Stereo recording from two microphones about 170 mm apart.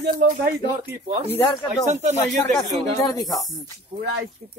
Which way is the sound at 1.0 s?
40° right (ahead or behind).